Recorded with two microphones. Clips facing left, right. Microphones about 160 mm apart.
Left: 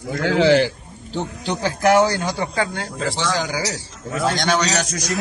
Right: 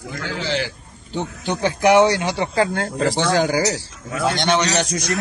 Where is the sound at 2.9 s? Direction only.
55° right (ahead or behind).